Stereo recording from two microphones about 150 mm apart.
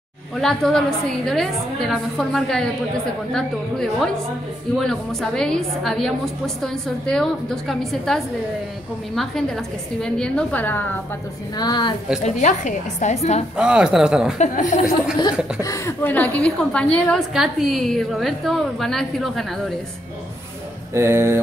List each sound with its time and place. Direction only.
0.4 s a woman's voice: centre (ahead or behind)
11.5 s a woman's voice: 30° left (ahead or behind)
12.2 s a woman's voice: 50° left (ahead or behind)
13.6 s a woman's voice: 5° right (ahead or behind)
14.4 s speech: 60° left (ahead or behind)
15.6 s a woman's voice: 20° left (ahead or behind); by 19.4 s centre (ahead or behind)
20.9 s a sound: 15° right (ahead or behind)